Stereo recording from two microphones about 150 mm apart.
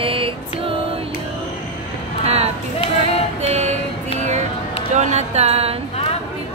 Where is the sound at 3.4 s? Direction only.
45° right (ahead or behind).